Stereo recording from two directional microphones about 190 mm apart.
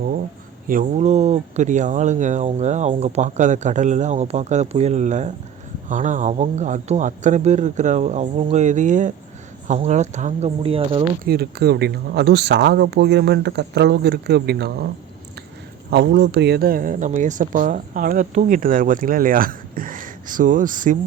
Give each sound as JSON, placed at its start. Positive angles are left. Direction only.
{"t": 0.7, "sound": "speech", "side_deg": -40}
{"t": 10.6, "sound": "speech", "side_deg": -30}
{"t": 11.3, "sound": "speech", "side_deg": -55}
{"t": 15.9, "sound": "speech", "side_deg": -60}